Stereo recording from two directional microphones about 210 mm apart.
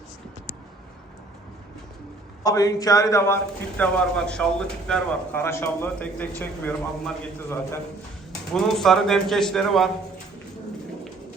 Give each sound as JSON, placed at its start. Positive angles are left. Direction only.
{"t": 2.4, "sound": "a man's voice", "side_deg": 15}
{"t": 8.5, "sound": "speech", "side_deg": 0}